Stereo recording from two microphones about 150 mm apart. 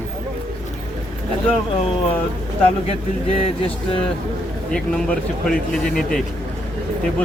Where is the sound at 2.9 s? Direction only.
40° left (ahead or behind).